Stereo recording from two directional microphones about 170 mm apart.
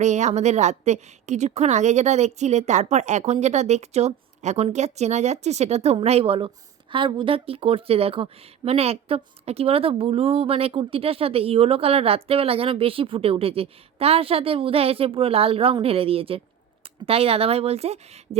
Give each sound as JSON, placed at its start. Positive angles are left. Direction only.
{"t": 0.0, "sound": "a woman's voice", "side_deg": -45}